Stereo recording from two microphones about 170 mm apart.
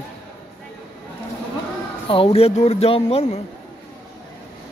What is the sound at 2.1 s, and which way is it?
Speech, 35° left (ahead or behind).